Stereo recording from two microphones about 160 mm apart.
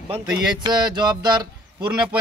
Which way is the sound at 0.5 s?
25° right (ahead or behind).